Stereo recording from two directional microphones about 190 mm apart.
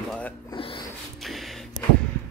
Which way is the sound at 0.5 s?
30° left (ahead or behind).